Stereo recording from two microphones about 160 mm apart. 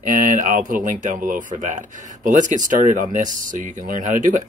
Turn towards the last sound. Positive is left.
turn(degrees=-55)  # may be behind; listen again after turning